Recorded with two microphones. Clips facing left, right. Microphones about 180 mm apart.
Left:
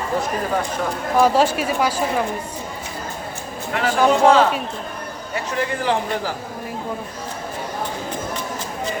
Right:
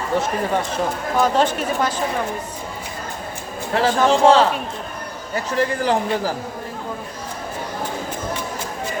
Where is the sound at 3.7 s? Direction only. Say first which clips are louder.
Right 1 dB; 30° right (ahead or behind).